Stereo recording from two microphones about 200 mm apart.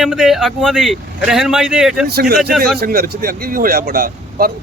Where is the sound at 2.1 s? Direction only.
50° right (ahead or behind).